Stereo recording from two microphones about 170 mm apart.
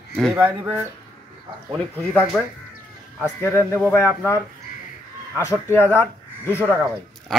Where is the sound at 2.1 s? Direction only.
5° left (ahead or behind).